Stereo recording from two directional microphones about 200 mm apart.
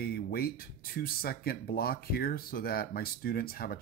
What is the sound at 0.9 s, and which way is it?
Speech, 50° left (ahead or behind).